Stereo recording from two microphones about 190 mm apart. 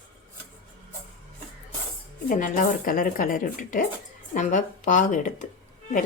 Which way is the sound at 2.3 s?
45° left (ahead or behind).